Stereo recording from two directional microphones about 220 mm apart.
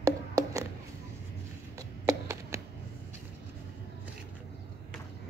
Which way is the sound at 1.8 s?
15° right (ahead or behind).